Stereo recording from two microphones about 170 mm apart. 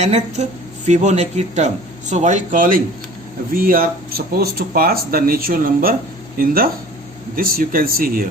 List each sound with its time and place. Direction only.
0.0 s speech: 40° right (ahead or behind); by 8.3 s 55° right (ahead or behind)